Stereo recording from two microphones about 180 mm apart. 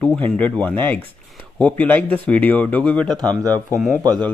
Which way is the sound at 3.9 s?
20° right (ahead or behind).